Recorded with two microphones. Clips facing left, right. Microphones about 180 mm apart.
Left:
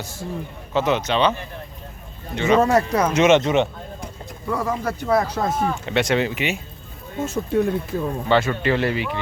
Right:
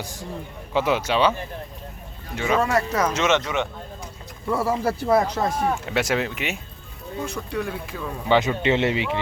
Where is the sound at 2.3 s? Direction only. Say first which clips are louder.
Left 5 dB; 5° right (ahead or behind).